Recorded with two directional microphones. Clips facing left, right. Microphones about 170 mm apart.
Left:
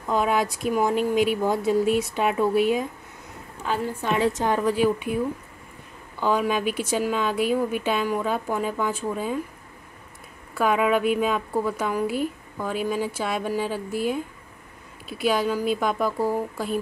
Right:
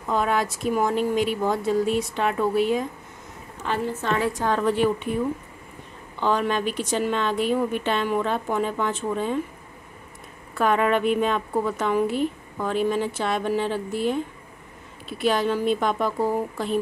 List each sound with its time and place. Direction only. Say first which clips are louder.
0.1 s speech: left 1 dB; 5° left (ahead or behind)
4.1 s a woman's voice: left 2 dB; 20° left (ahead or behind)
4.6 s a woman's voice: even; 5° left (ahead or behind)
10.6 s a woman's voice: even; 5° left (ahead or behind)